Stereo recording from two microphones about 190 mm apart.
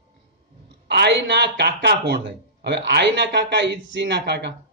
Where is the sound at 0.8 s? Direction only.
60° right (ahead or behind).